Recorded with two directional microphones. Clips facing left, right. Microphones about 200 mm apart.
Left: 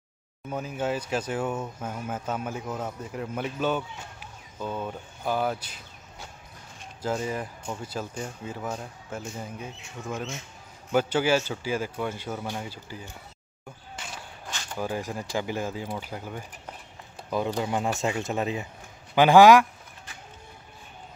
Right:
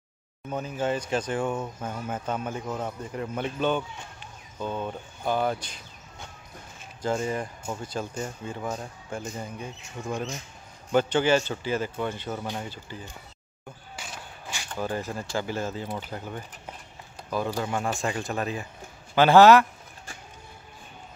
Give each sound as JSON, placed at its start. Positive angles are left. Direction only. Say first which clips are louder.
{"t": 0.5, "sound": "speech", "louder": "right 1 dB", "side_deg": 5}
{"t": 13.9, "sound": "walk", "louder": "left 1 dB", "side_deg": -10}
{"t": 14.7, "sound": "speech", "louder": "even", "side_deg": 10}